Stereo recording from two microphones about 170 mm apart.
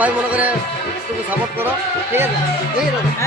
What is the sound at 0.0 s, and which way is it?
Speech, 10° right (ahead or behind).